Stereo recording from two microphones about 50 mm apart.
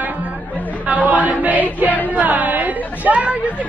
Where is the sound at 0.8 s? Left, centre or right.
Right.